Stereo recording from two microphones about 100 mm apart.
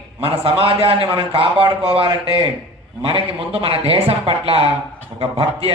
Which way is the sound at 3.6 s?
75° right (ahead or behind).